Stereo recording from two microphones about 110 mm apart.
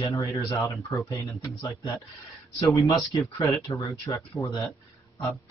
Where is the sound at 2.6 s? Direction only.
30° left (ahead or behind).